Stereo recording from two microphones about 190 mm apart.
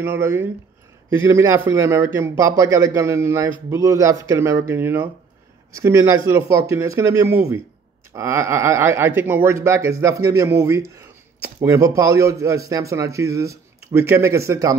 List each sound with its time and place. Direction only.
0.0 s a man's voice: 15° right (ahead or behind)